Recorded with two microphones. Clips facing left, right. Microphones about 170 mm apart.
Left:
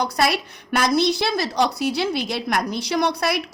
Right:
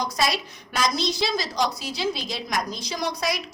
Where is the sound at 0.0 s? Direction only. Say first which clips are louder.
Left 4 dB; 60° left (ahead or behind).